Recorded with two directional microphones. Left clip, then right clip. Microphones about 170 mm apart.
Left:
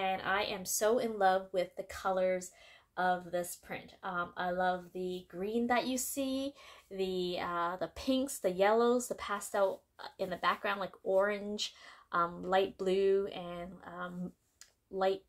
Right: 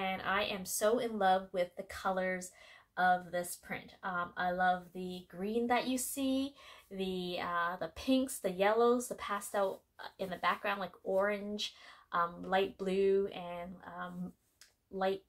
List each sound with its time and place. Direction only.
0.0 s speech: 40° left (ahead or behind)